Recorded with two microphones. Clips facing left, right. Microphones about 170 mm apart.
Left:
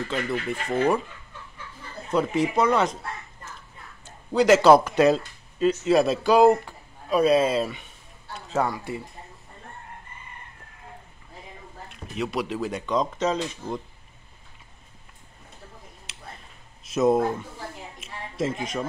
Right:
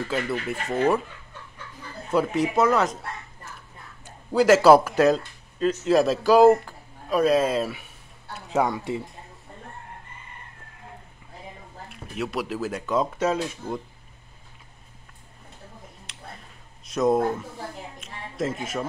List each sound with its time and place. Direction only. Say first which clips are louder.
0.1 s speech: even; 5° right (ahead or behind)
2.0 s speech: even; 5° right (ahead or behind)
4.0 s speech: right 1 dB; 5° right (ahead or behind)
8.5 s speech: right 2 dB; 15° right (ahead or behind)
11.9 s speech: left 1 dB; 5° right (ahead or behind)
16.1 s a sound: right 1 dB; 5° left (ahead or behind)
16.8 s speech: left 1 dB; 5° left (ahead or behind)
18.0 s a sound: left 1 dB; centre (ahead or behind)